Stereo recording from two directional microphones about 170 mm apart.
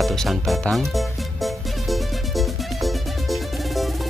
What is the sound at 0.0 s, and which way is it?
Music, centre (ahead or behind).